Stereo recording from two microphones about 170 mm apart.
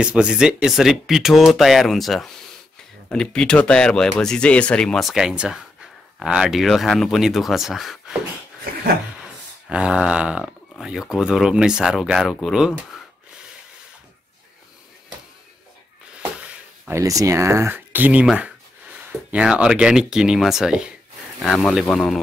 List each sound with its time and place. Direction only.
0.0 s speech: 5° right (ahead or behind)
9.7 s speech: 5° right (ahead or behind)
16.2 s speech: 10° right (ahead or behind)